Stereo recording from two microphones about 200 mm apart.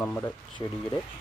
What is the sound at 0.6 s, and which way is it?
Speech, 25° left (ahead or behind).